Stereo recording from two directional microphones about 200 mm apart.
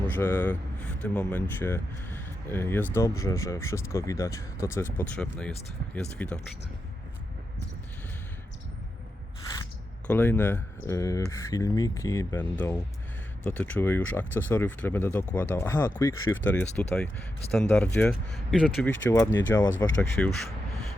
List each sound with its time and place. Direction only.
0.2 s speech: 10° left (ahead or behind)
10.1 s speech: 10° left (ahead or behind)